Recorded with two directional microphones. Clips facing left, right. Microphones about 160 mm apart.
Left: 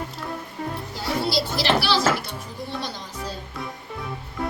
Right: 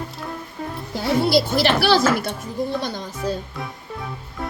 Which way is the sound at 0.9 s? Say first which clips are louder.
Right 7 dB; 55° right (ahead or behind).